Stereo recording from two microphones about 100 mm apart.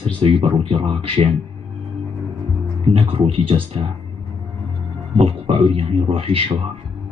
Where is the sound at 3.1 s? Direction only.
60° right (ahead or behind).